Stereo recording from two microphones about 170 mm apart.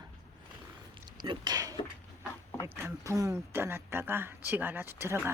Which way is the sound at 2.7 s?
15° right (ahead or behind).